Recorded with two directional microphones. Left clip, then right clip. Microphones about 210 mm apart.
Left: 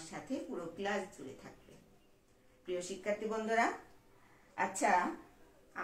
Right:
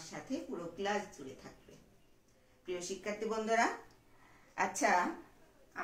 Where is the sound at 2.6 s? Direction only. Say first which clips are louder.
Left 2 dB; centre (ahead or behind).